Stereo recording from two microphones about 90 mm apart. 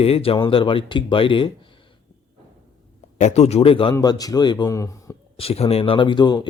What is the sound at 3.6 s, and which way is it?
Speech, 85° left.